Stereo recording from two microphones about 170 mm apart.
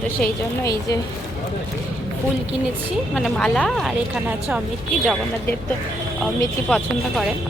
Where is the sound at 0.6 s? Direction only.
20° left (ahead or behind).